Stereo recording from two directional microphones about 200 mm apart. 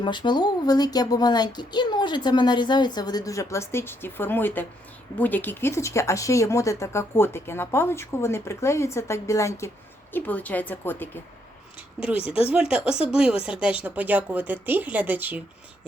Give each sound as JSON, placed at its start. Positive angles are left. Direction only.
{"t": 0.0, "sound": "speech", "side_deg": 25}
{"t": 11.9, "sound": "speech", "side_deg": -5}